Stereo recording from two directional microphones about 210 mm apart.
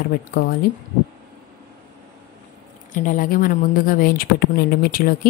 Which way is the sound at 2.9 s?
40° left (ahead or behind).